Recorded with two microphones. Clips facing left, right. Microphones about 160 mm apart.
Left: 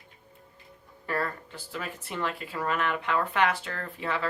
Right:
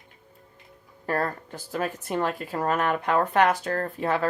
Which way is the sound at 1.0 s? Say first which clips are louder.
Right 4 dB; 45° right (ahead or behind).